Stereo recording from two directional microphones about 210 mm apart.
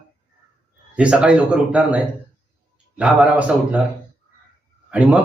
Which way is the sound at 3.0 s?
5° right (ahead or behind).